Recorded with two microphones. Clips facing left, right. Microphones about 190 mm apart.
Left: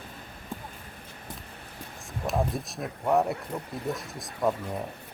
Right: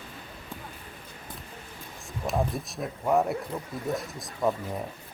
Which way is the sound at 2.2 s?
Centre (ahead or behind).